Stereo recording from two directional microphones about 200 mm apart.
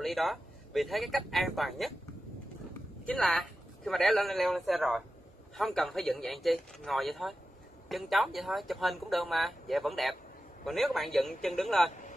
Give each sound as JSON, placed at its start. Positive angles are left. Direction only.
{"t": 0.0, "sound": "speech", "side_deg": 0}
{"t": 3.1, "sound": "speech", "side_deg": 5}
{"t": 11.9, "sound": "a sound", "side_deg": 40}